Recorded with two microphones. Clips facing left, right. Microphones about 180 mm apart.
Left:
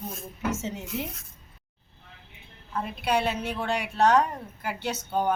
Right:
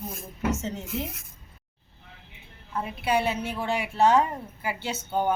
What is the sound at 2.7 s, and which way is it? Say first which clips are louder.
A woman's voice: right 1 dB; 5° right (ahead or behind).